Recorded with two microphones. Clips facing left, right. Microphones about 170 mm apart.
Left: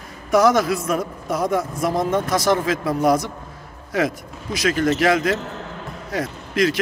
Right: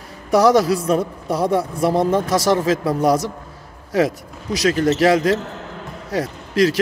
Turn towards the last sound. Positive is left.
turn(degrees=-35)  # may be behind; listen again after turning